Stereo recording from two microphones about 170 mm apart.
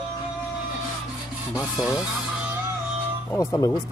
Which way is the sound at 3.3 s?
15° left (ahead or behind).